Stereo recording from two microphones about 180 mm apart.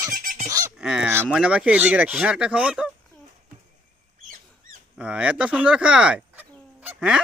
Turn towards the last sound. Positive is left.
turn(degrees=-5)  # may be behind; listen again after turning